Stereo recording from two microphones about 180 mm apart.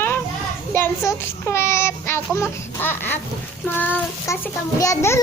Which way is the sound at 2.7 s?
10° left (ahead or behind).